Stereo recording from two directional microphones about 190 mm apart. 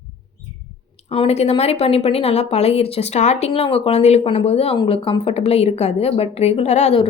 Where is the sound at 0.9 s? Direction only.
30° left (ahead or behind).